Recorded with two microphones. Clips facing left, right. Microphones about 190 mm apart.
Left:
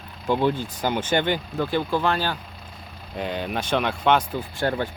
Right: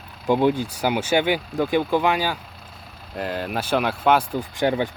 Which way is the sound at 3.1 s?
Centre (ahead or behind).